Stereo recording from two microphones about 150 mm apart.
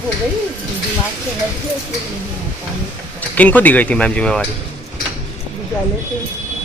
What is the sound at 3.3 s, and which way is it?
Speech, 10° left (ahead or behind).